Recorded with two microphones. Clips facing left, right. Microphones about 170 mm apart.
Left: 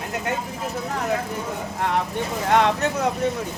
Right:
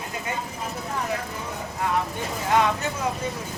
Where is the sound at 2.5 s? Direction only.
70° left (ahead or behind).